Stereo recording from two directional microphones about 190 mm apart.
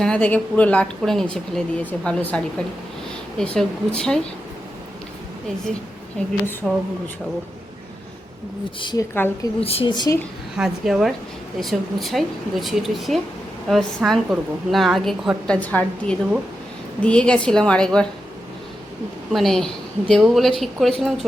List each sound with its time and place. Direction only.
0.0 s a woman's voice: 5° left (ahead or behind)
6.6 s a woman's voice: centre (ahead or behind)
8.8 s a woman's voice: 25° left (ahead or behind)
9.1 s a woman's voice: 10° left (ahead or behind)
9.6 s a woman's voice: 30° left (ahead or behind)
10.6 s a woman's voice: 5° right (ahead or behind)
19.3 s a woman's voice: centre (ahead or behind)